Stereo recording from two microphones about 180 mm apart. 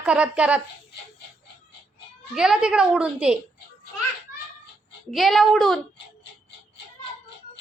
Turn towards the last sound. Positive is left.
turn(degrees=0)  # may be behind; listen again after turning